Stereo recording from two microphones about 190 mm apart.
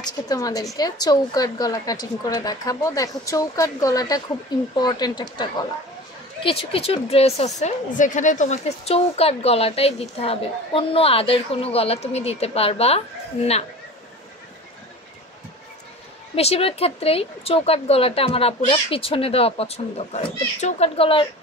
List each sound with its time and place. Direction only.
0.3 s a woman's voice: 20° left (ahead or behind)
6.7 s speech: 30° left (ahead or behind)
16.3 s speech: 30° left (ahead or behind)